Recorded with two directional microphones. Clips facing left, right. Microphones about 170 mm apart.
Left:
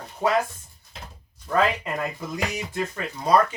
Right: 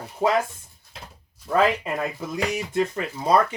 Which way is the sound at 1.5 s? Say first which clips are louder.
Right 2 dB; 10° right (ahead or behind).